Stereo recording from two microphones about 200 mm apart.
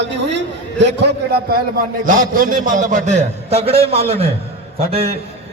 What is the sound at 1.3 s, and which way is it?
A man's voice, 50° right (ahead or behind).